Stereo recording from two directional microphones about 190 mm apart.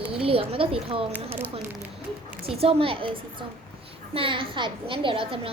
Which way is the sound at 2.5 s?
30° right (ahead or behind).